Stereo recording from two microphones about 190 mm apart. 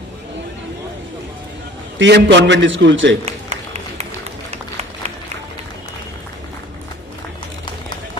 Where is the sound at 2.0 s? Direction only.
70° right (ahead or behind).